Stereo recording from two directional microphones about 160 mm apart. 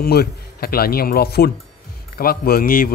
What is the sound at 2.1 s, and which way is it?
Speech, 70° left (ahead or behind).